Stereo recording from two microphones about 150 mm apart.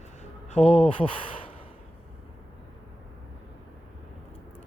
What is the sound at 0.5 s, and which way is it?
Speech, 40° left (ahead or behind).